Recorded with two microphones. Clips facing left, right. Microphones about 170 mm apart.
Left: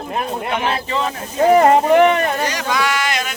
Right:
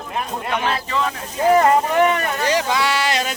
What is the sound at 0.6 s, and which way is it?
Speech, 25° left (ahead or behind).